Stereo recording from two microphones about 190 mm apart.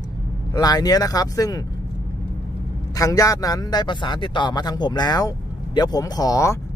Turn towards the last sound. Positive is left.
turn(degrees=15)  # may be behind; listen again after turning